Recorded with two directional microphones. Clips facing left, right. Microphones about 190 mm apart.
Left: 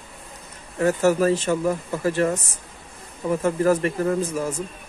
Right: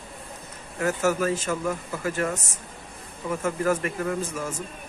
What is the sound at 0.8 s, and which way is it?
A man's voice, 35° left (ahead or behind).